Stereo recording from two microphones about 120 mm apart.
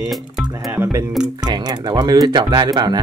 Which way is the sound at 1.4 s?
35° right (ahead or behind).